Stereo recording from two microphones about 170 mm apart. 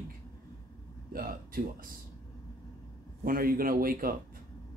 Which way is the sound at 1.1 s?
60° right (ahead or behind).